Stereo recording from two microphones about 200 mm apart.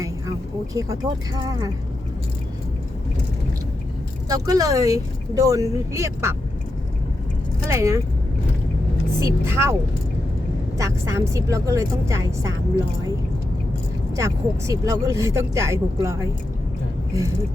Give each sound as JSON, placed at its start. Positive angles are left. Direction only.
{"t": 0.0, "sound": "a woman's voice", "side_deg": -15}
{"t": 4.3, "sound": "speech", "side_deg": -15}
{"t": 7.7, "sound": "speech", "side_deg": -15}
{"t": 9.1, "sound": "speech", "side_deg": -15}
{"t": 10.8, "sound": "speech", "side_deg": -15}
{"t": 14.2, "sound": "speech", "side_deg": -15}